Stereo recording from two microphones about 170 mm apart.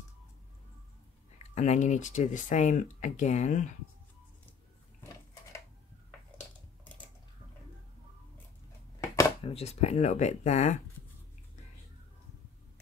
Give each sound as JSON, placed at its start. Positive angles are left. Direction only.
{"t": 1.5, "sound": "speech", "side_deg": 45}
{"t": 5.0, "sound": "a sound", "side_deg": 20}
{"t": 9.4, "sound": "speech", "side_deg": 35}